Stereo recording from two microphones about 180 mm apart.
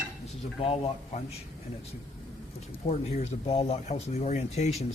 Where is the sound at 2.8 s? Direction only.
35° left (ahead or behind).